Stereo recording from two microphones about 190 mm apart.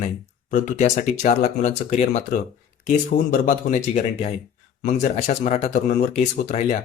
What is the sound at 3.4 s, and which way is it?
Speech, 40° left (ahead or behind).